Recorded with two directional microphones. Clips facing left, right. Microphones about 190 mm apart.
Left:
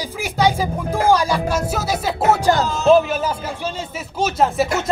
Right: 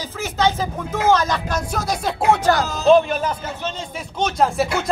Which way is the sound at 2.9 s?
5° left (ahead or behind).